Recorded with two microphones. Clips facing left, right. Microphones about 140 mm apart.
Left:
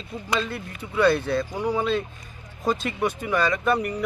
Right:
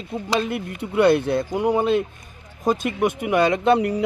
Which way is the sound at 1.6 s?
55° right (ahead or behind).